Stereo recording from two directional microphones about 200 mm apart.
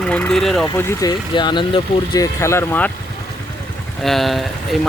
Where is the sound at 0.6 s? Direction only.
15° left (ahead or behind).